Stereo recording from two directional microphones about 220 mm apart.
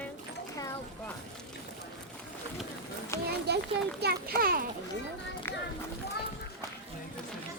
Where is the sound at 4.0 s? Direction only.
45° right (ahead or behind).